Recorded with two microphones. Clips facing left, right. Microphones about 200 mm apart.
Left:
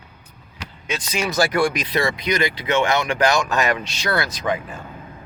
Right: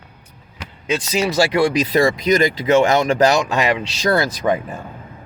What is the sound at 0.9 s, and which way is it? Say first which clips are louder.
Speech: right 4 dB; 30° right (ahead or behind).